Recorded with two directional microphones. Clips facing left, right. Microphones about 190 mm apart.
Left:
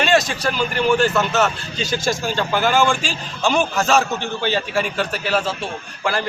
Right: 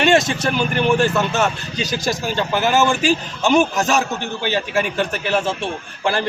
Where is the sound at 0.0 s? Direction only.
20° right (ahead or behind).